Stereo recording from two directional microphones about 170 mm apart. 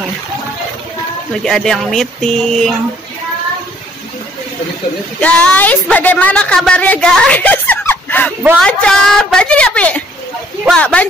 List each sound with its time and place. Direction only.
1.4 s speech: 5° left (ahead or behind)
5.2 s a woman's voice: 10° left (ahead or behind)
8.4 s a woman's voice: centre (ahead or behind)